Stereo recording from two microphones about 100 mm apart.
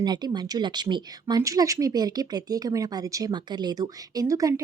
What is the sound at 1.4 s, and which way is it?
Speech, 35° right (ahead or behind).